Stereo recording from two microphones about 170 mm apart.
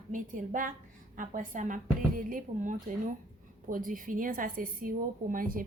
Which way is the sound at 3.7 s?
55° right (ahead or behind).